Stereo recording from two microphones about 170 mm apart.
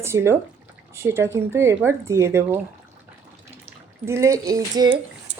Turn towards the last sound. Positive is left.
turn(degrees=-20)  # may be behind; listen again after turning